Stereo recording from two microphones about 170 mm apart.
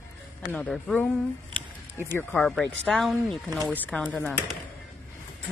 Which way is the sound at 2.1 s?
10° left (ahead or behind).